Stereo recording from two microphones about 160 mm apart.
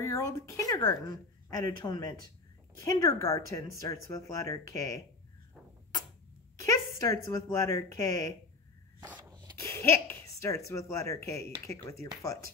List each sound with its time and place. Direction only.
0.0 s speech: 20° left (ahead or behind)
6.6 s speech: 20° left (ahead or behind)
9.3 s a sound: 25° right (ahead or behind)
9.6 s speech: 20° left (ahead or behind)